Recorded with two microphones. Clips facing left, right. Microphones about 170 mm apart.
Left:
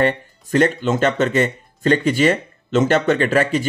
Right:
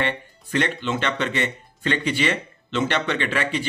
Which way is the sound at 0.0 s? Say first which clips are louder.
Left 7 dB; 40° left (ahead or behind).